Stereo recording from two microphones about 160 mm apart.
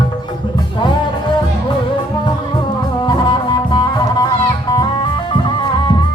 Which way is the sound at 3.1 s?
30° left (ahead or behind).